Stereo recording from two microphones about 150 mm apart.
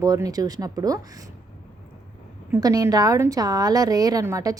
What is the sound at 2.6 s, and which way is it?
A woman's voice, 25° right (ahead or behind).